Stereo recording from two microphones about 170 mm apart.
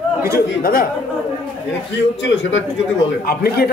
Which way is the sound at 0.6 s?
60° left (ahead or behind).